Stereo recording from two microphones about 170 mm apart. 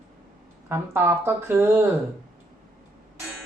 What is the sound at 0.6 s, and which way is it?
Speech, 15° right (ahead or behind).